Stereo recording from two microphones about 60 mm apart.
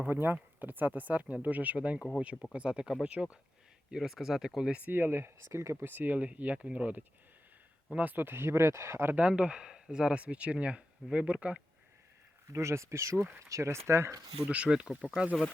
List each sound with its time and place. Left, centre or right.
0.0 s speech: right; by 3.2 s centre
3.9 s speech: centre
4.9 s speech: right
5.5 s speech: right
5.8 s speech: right
9.1 s speech: right
12.5 s speech: right
14.5 s speech: centre